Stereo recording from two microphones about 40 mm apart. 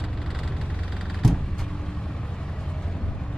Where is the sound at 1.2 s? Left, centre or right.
Centre.